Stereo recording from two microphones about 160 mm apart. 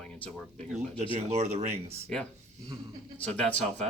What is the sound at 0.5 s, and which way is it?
Speech, 45° right (ahead or behind).